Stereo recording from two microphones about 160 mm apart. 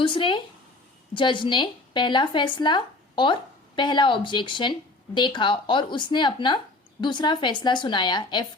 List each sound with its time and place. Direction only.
0.0 s speech: 30° left (ahead or behind)